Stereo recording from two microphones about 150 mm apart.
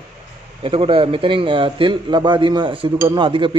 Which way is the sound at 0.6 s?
40° right (ahead or behind).